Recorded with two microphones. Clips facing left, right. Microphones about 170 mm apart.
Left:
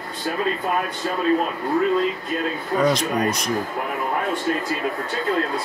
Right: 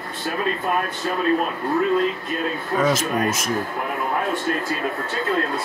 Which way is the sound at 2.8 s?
Centre (ahead or behind).